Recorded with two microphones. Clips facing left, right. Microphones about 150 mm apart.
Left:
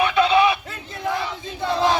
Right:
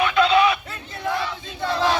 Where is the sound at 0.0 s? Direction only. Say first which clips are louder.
Even; 25° left (ahead or behind).